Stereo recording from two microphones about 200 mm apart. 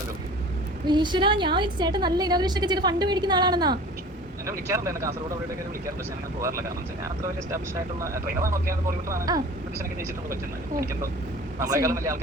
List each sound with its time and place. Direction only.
0.9 s a woman's voice: 20° right (ahead or behind)
7.2 s speech: 15° right (ahead or behind)
11.6 s speech: 15° right (ahead or behind)